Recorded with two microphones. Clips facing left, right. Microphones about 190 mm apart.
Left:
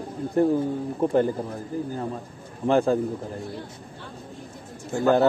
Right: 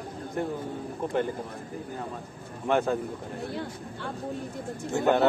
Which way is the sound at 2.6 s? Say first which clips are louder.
Left 5 dB; 30° left (ahead or behind).